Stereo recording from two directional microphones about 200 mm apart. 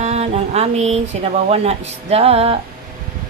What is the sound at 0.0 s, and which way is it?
Speech, 35° right (ahead or behind).